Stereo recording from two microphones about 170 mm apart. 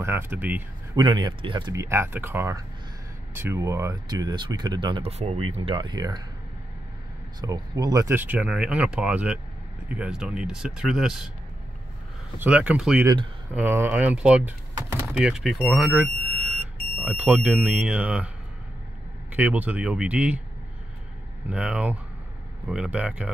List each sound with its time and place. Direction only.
0.0 s speech: 15° right (ahead or behind)
0.9 s speech: 25° right (ahead or behind)
7.3 s speech: 20° right (ahead or behind); by 11.2 s 5° right (ahead or behind)
12.4 s speech: 10° right (ahead or behind)
13.0 s speech: 25° right (ahead or behind)
13.5 s speech: 10° right (ahead or behind)
19.3 s speech: 10° right (ahead or behind)
21.5 s speech: 5° right (ahead or behind)